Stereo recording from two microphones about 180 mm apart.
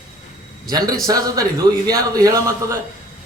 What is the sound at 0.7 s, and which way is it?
A man's voice, 20° right (ahead or behind).